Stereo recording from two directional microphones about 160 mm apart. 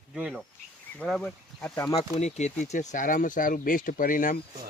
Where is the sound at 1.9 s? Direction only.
45° left (ahead or behind).